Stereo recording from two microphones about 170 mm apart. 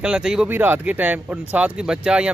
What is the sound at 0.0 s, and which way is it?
Speech, 5° right (ahead or behind).